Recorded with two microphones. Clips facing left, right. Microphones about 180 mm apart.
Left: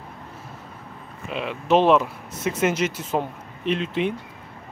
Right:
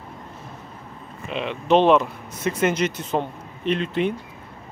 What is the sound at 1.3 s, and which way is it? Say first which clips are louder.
Speech: right 1 dB; 5° left (ahead or behind).